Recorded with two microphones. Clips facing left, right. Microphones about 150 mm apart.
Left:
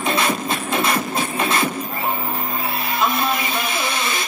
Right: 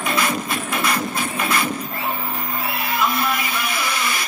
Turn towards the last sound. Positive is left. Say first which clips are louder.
# left 1 dB
turn(degrees=25)  # may be behind; listen again after turning